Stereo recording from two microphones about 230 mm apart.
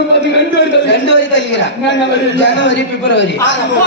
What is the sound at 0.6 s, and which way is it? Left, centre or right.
A man's voice, left.